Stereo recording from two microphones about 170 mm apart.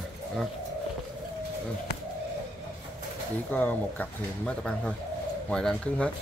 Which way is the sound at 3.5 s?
10° left (ahead or behind).